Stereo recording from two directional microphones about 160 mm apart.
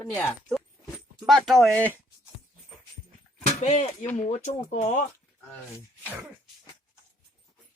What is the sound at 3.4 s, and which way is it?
Speech, 45° left (ahead or behind).